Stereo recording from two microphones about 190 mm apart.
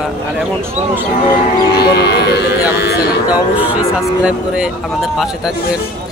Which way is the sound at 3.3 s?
5° right (ahead or behind).